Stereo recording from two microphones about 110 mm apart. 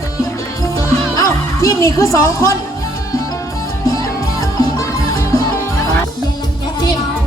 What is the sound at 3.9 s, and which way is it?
Music, 30° left (ahead or behind).